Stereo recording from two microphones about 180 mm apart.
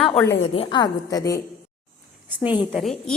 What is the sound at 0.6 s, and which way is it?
Speech, 25° left (ahead or behind).